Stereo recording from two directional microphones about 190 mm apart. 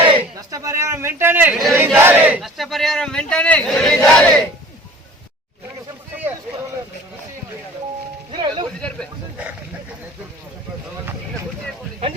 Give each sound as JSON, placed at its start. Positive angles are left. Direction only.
{"t": 0.1, "sound": "a man's voice", "side_deg": -25}
{"t": 1.5, "sound": "speech", "side_deg": 0}
{"t": 2.0, "sound": "speech", "side_deg": -10}
{"t": 8.3, "sound": "music", "side_deg": -25}